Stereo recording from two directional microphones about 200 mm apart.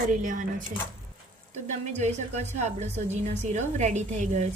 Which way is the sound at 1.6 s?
35° right (ahead or behind).